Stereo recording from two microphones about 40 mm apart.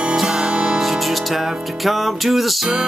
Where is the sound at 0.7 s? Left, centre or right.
Centre.